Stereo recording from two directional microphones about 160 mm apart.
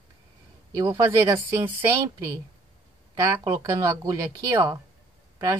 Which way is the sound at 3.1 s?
25° right (ahead or behind).